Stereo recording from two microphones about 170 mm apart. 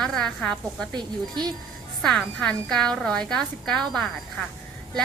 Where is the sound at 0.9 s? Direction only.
25° right (ahead or behind).